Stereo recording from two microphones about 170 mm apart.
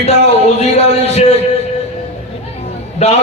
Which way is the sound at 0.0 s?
40° left (ahead or behind).